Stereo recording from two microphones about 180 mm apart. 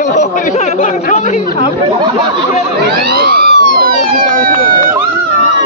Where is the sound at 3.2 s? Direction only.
60° right (ahead or behind).